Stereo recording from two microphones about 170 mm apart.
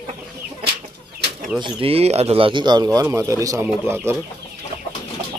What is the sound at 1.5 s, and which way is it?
Speech, 30° right (ahead or behind).